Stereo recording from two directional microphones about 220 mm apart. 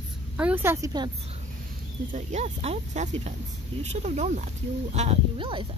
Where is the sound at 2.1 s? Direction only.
30° right (ahead or behind).